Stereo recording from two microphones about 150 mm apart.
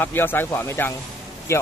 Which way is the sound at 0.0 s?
15° left (ahead or behind).